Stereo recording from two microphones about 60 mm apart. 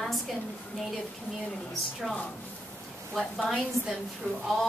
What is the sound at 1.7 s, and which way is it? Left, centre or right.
A woman's voice, centre.